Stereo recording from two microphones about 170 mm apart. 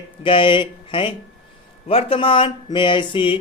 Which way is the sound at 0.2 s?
30° left (ahead or behind).